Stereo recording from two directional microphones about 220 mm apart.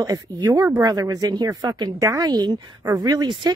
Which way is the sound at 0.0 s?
15° right (ahead or behind).